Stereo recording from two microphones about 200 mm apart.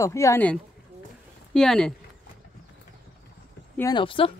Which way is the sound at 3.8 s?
20° left (ahead or behind).